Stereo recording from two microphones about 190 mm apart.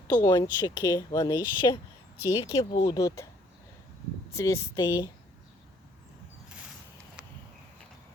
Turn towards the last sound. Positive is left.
turn(degrees=-5)  # may be behind; listen again after turning